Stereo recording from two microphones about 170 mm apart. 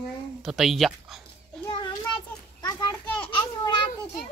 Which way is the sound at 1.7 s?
25° left (ahead or behind).